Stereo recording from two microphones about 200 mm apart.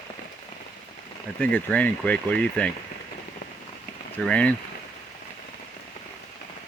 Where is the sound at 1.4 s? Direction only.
5° left (ahead or behind).